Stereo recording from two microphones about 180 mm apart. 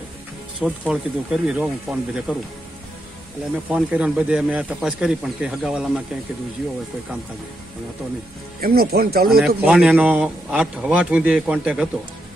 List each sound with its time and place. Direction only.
0.6 s speech: 5° right (ahead or behind)
3.7 s speech: 5° right (ahead or behind)
8.5 s speech: 55° right (ahead or behind)
9.4 s a man's voice: 5° right (ahead or behind)